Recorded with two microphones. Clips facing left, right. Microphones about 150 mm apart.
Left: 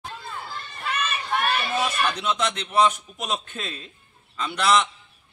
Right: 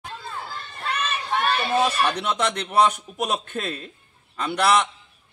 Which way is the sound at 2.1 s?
55° right (ahead or behind).